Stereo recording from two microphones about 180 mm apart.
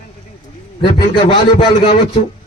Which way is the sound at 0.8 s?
30° left (ahead or behind).